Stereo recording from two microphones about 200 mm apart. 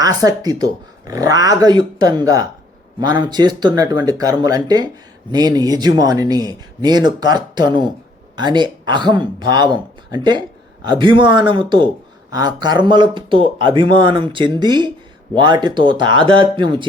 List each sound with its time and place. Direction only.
0.0 s speech: 20° right (ahead or behind)